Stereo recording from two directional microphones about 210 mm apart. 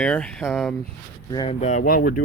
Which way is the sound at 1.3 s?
20° left (ahead or behind).